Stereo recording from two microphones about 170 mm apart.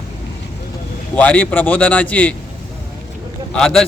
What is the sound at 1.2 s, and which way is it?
A man's voice, 10° left (ahead or behind).